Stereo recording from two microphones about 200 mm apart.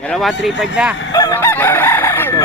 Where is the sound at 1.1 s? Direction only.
15° left (ahead or behind).